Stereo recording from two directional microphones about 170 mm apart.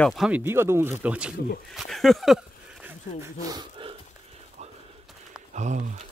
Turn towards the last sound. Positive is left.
turn(degrees=-45)  # may be behind; listen again after turning